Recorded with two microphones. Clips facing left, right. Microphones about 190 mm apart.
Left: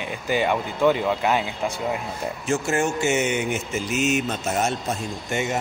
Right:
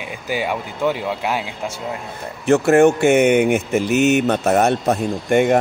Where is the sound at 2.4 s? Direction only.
60° right (ahead or behind).